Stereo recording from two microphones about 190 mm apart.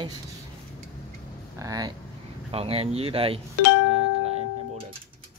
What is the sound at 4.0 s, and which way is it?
Music, 30° right (ahead or behind).